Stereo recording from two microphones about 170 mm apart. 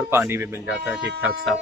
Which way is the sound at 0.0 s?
10° right (ahead or behind).